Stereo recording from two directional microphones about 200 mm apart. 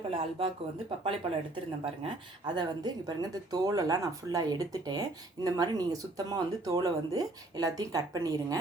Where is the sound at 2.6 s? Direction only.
20° right (ahead or behind).